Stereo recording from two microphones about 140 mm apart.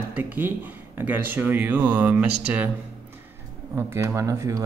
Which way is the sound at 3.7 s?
15° right (ahead or behind).